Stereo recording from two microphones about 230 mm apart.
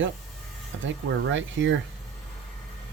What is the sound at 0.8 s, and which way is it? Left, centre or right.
Speech, right.